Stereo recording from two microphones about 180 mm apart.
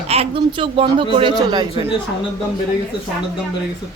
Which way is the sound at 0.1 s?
30° right (ahead or behind).